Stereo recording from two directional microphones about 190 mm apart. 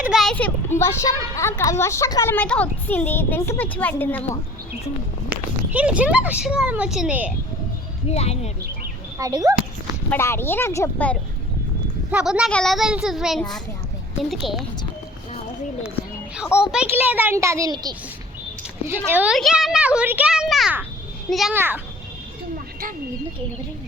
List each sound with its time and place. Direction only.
0.0 s speech: centre (ahead or behind)
5.3 s speech: 5° right (ahead or behind)
8.1 s speech: 35° left (ahead or behind)
9.1 s a sound: 20° right (ahead or behind)
10.1 s speech: 10° left (ahead or behind)
12.1 s a child's voice: 5° right (ahead or behind)
16.5 s speech: 15° left (ahead or behind)
16.9 s a child's voice: 10° right (ahead or behind)
19.0 s a child's voice: 10° right (ahead or behind)
21.5 s a child's voice: 10° right (ahead or behind)